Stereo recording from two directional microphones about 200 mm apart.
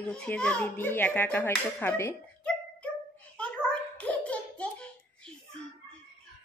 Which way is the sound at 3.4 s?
5° left (ahead or behind).